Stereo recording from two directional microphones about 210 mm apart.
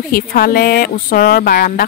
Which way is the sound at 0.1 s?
45° left (ahead or behind).